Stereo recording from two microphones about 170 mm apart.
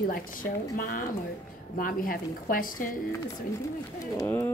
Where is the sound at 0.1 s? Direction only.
55° left (ahead or behind).